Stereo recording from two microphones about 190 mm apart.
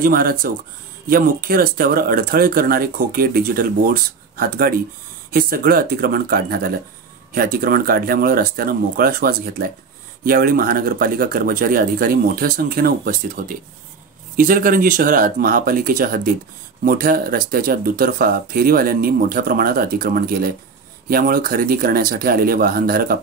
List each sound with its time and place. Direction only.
0.0 s speech: 50° right (ahead or behind)